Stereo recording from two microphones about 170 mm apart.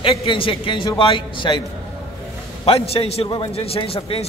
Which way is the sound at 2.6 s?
35° left (ahead or behind).